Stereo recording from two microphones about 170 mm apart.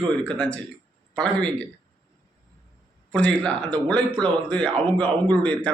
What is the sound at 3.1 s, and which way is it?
Speech, 5° left (ahead or behind).